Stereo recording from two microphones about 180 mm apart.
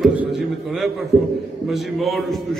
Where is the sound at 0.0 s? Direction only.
5° right (ahead or behind).